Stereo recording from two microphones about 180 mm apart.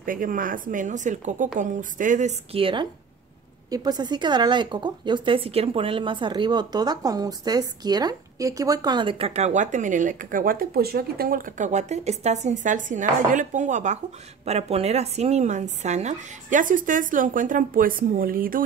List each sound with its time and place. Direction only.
0.0 s a woman's voice: 50° right (ahead or behind)